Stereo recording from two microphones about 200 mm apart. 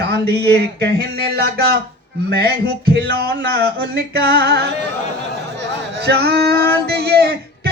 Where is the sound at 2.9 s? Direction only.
55° right (ahead or behind).